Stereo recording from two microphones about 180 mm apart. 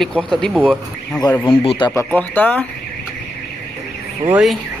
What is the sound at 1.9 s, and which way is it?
Speech, 10° left (ahead or behind).